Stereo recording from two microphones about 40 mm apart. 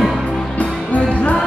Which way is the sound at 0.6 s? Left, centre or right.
Left.